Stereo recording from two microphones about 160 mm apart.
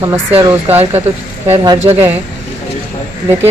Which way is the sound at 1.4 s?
20° right (ahead or behind).